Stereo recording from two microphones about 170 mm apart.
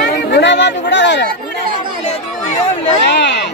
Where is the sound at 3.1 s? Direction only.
90° left.